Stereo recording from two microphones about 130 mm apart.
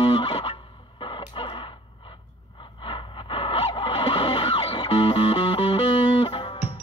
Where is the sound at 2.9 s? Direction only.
40° left (ahead or behind).